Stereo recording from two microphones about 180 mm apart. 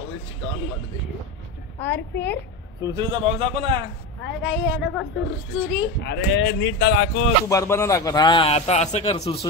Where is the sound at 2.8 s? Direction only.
25° right (ahead or behind).